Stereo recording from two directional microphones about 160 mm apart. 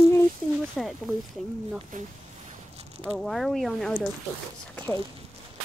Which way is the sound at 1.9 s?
55° right (ahead or behind).